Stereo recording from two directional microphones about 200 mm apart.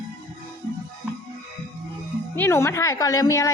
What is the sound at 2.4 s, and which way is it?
A woman's voice, 15° left (ahead or behind).